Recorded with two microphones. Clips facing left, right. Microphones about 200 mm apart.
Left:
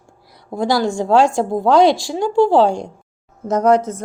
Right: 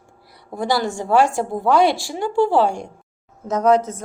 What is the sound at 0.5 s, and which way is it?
Speech, 15° left (ahead or behind).